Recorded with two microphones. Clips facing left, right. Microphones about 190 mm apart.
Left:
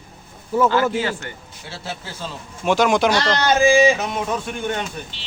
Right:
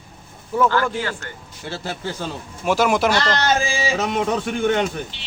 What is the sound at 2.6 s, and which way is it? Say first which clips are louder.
Speech: left 1 dB; 5° right (ahead or behind).